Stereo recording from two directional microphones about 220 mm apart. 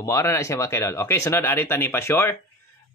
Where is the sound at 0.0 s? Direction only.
15° left (ahead or behind).